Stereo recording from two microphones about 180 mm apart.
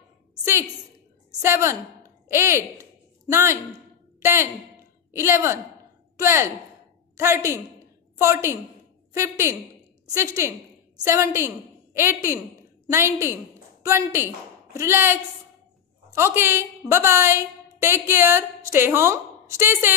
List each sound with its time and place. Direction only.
1.4 s a woman's voice: 15° right (ahead or behind)